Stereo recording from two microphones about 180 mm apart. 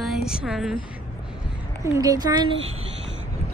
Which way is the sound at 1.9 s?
20° right (ahead or behind).